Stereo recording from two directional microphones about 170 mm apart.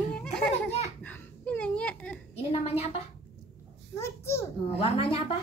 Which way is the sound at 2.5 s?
40° left (ahead or behind).